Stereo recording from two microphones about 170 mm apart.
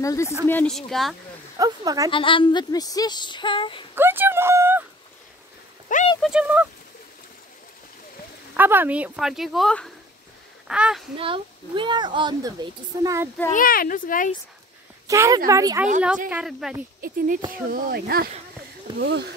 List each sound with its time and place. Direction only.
0.0 s speech: 20° left (ahead or behind)
0.5 s speech: 5° left (ahead or behind)
1.6 s speech: 20° right (ahead or behind)
2.0 s a woman's voice: 30° left (ahead or behind)
3.9 s a sound: 10° right (ahead or behind)
5.9 s a sound: 50° left (ahead or behind)
6.2 s speech: 5° right (ahead or behind)
8.5 s speech: 10° right (ahead or behind)
11.1 s speech: 30° right (ahead or behind)
13.5 s speech: 55° left (ahead or behind)
15.0 s speech: 20° right (ahead or behind)
16.3 s speech: 5° right (ahead or behind)
17.0 s speech: 55° right (ahead or behind)
18.9 s speech: 25° right (ahead or behind)